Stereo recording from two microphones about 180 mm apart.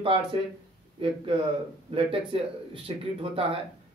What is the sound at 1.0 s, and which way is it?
Speech, 30° right (ahead or behind).